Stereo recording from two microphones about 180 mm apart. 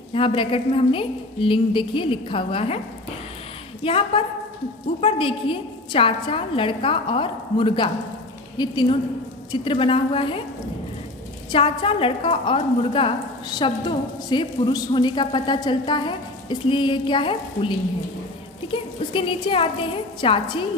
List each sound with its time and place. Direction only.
0.1 s a woman's voice: 30° left (ahead or behind)
3.8 s a woman's voice: 30° left (ahead or behind)
11.5 s a woman's voice: 30° left (ahead or behind)